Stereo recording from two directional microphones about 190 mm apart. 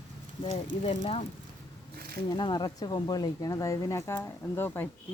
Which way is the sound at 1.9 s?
55° right (ahead or behind).